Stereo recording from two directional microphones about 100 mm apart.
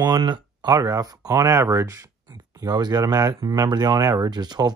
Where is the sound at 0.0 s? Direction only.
45° right (ahead or behind).